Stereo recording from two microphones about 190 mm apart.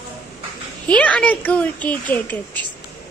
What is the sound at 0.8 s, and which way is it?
Speech, 5° left (ahead or behind).